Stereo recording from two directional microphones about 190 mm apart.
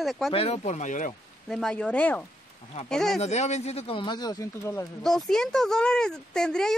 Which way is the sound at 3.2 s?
35° left (ahead or behind).